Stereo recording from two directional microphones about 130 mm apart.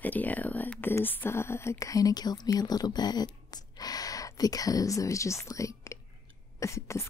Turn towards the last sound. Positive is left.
turn(degrees=20)  # may be behind; listen again after turning